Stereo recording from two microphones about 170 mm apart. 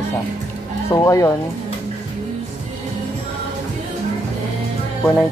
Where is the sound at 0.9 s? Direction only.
20° left (ahead or behind).